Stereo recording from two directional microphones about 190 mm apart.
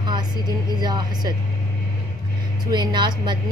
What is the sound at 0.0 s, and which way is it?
Music, 20° right (ahead or behind).